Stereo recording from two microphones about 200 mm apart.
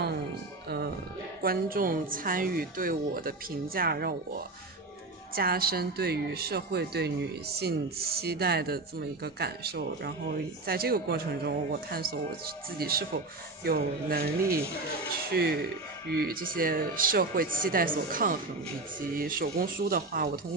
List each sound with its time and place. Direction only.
0.7 s music: 50° right (ahead or behind)
1.4 s speech: 45° right (ahead or behind)
5.3 s speech: 50° right (ahead or behind)